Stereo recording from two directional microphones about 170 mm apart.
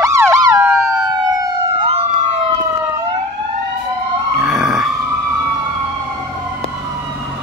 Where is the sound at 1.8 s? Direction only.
35° right (ahead or behind).